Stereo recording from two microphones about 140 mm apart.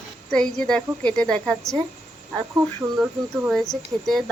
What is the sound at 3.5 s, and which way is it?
Speech, centre (ahead or behind).